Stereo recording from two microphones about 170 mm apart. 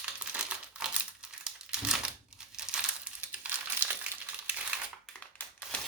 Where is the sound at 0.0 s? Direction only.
5° right (ahead or behind).